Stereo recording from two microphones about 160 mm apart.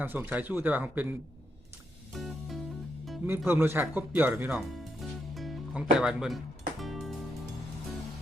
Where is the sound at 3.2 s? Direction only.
15° right (ahead or behind).